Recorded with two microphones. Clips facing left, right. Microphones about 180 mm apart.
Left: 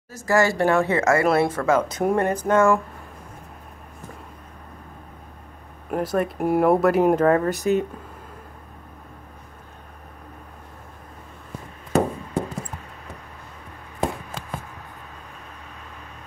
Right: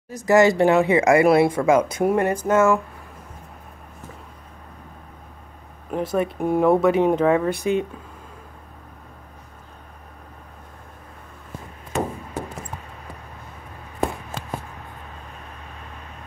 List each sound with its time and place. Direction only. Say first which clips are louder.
0.1 s speech: right 4 dB; 20° right (ahead or behind)
5.9 s speech: even; 5° left (ahead or behind)
7.4 s speech: left 1 dB; 40° left (ahead or behind)
11.9 s a sound: left 5 dB; 35° left (ahead or behind)